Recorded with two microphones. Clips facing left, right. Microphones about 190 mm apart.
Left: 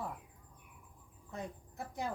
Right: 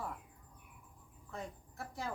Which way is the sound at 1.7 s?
20° left (ahead or behind).